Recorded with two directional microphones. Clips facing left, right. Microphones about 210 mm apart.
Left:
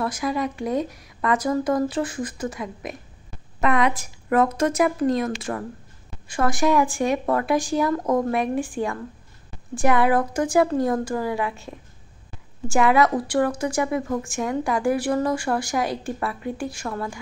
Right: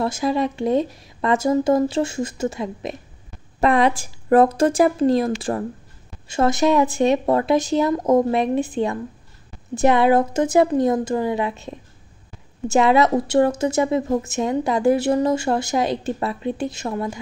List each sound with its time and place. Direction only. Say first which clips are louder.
0.0 s a woman's voice: right 4 dB; 25° right (ahead or behind)